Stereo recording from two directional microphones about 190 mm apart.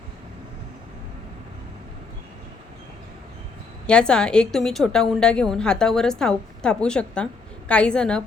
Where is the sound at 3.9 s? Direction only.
5° left (ahead or behind).